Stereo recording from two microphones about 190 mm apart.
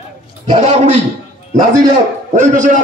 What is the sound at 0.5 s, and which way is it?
Speech, 40° right (ahead or behind).